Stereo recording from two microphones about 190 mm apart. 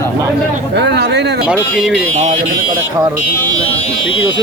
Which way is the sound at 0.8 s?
65° right (ahead or behind).